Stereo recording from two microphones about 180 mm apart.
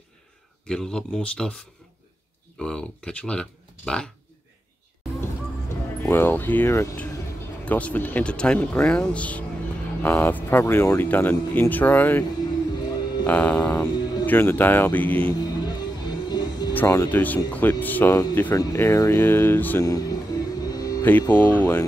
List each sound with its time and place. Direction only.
0.7 s speech: 5° left (ahead or behind)
2.6 s speech: 5° left (ahead or behind)
6.0 s speech: 10° left (ahead or behind)
13.3 s speech: 5° left (ahead or behind)
15.3 s music: 25° left (ahead or behind)
16.7 s speech: 15° left (ahead or behind)